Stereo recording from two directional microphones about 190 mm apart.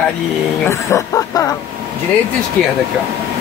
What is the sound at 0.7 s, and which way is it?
Speech, 15° left (ahead or behind).